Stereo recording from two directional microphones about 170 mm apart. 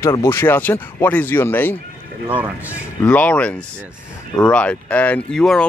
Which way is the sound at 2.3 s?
10° right (ahead or behind).